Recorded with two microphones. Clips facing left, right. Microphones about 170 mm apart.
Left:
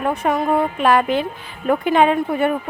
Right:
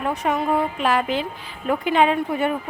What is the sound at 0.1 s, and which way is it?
Speech, 50° left (ahead or behind).